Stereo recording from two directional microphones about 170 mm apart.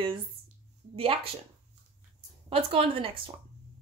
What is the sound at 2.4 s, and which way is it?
Speech, 30° right (ahead or behind).